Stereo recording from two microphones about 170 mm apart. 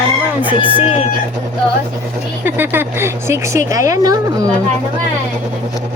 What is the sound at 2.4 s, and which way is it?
Speech, 10° right (ahead or behind).